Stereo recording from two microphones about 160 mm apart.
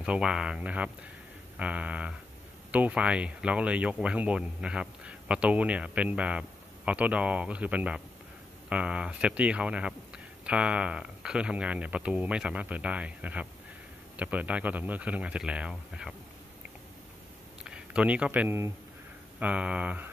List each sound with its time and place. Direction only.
0.0 s speech: 5° right (ahead or behind)
17.6 s speech: 5° right (ahead or behind)